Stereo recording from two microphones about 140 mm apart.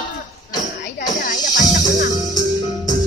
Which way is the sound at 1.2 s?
70° left (ahead or behind).